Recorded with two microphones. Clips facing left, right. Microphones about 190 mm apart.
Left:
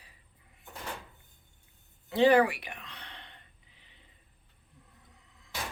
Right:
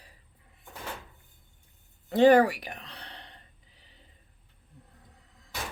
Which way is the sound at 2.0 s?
45° right (ahead or behind).